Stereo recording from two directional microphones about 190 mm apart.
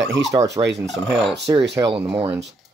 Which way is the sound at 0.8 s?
Centre (ahead or behind).